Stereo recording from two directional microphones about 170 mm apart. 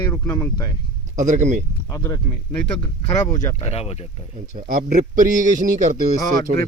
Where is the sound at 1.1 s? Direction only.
45° right (ahead or behind).